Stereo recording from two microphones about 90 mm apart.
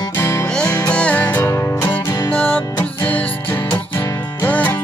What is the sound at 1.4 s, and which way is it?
Music, 35° left (ahead or behind).